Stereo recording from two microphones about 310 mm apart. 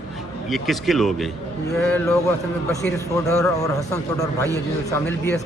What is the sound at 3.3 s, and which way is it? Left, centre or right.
A man's voice, centre.